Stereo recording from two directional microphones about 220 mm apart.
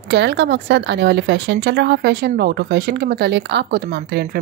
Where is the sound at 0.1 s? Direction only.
50° right (ahead or behind).